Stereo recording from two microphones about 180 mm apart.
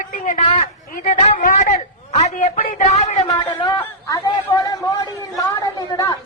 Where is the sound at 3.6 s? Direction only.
25° left (ahead or behind).